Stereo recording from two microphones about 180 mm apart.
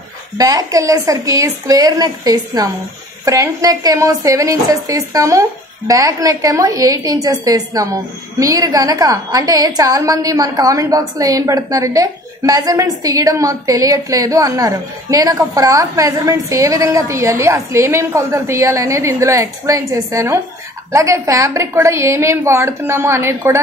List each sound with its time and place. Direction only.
0.4 s a woman's voice: 20° right (ahead or behind)